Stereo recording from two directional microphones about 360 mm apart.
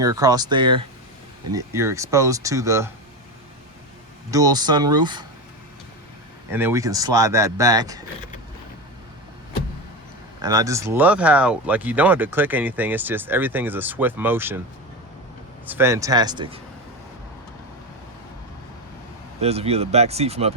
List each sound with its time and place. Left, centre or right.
0.0 s speech: centre
4.3 s speech: centre
6.5 s speech: centre
10.4 s speech: centre
15.6 s speech: centre
19.4 s speech: centre